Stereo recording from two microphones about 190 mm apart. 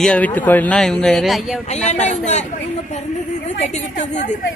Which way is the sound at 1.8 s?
40° left (ahead or behind).